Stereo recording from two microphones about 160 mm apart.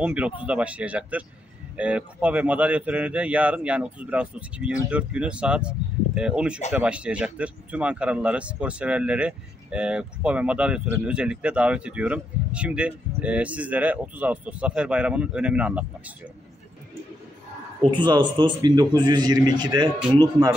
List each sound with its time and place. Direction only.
0.0 s speech: 10° right (ahead or behind)
17.9 s a man's voice: 25° right (ahead or behind)